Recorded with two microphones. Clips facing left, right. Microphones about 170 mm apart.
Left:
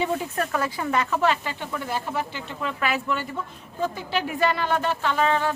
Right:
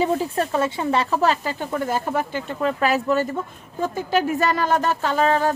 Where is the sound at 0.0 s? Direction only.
35° right (ahead or behind).